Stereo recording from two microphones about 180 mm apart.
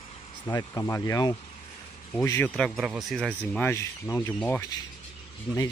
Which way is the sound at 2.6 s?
Centre (ahead or behind).